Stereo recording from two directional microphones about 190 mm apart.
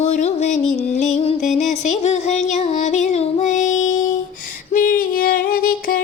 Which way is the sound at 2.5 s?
35° left (ahead or behind).